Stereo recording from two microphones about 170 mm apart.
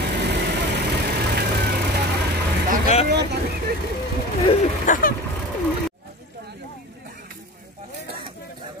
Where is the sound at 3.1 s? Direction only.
80° right.